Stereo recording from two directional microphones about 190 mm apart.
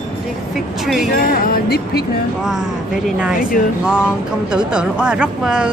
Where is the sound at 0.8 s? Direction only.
Centre (ahead or behind).